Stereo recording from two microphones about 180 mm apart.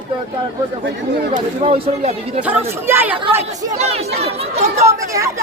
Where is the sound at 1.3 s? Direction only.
35° right (ahead or behind).